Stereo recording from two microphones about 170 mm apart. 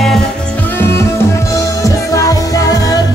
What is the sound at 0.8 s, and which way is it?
Music, 15° left (ahead or behind).